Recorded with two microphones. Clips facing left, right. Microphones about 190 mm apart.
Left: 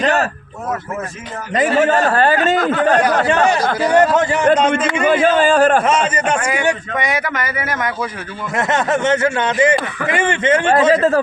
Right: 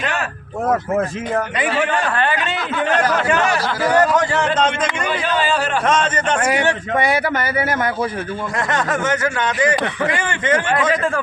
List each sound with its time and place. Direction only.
0.0 s a sound: 40° left (ahead or behind)
1.5 s a man's voice: 40° left (ahead or behind); by 4.4 s 20° left (ahead or behind)
5.0 s a man's voice: 45° left (ahead or behind)
5.8 s a man's voice: 10° left (ahead or behind)
6.9 s a man's voice: 30° right (ahead or behind)
8.5 s speech: 25° left (ahead or behind)